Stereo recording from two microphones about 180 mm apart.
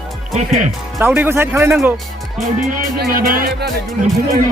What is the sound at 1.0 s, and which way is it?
Speech, 10° right (ahead or behind).